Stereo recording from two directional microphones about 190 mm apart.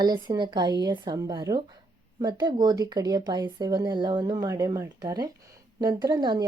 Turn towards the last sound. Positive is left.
turn(degrees=-25)  # may be behind; listen again after turning